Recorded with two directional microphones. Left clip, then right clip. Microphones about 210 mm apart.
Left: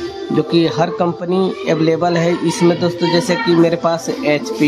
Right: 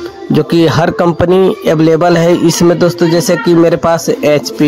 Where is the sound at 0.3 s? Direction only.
35° right (ahead or behind).